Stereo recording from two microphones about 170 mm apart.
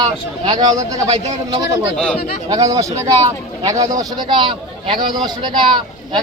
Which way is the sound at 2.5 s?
20° right (ahead or behind).